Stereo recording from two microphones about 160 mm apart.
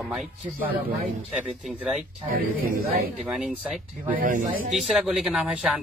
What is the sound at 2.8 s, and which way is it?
Speech, 70° right (ahead or behind).